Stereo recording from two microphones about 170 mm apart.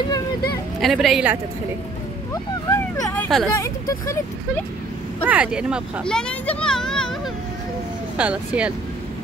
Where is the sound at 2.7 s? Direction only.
15° left (ahead or behind).